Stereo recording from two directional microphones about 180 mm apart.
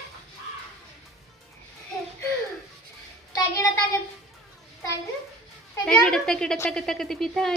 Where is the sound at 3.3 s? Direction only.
15° left (ahead or behind).